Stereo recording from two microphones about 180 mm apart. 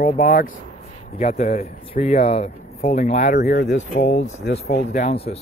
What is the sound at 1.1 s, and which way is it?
Speech, 35° left (ahead or behind).